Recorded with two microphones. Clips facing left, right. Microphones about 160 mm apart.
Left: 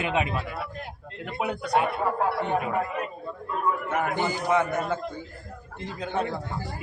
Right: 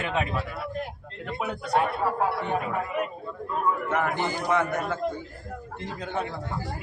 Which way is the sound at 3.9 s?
10° left (ahead or behind).